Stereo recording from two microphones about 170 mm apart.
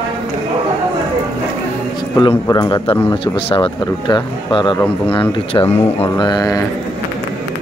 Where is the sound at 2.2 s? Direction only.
25° left (ahead or behind).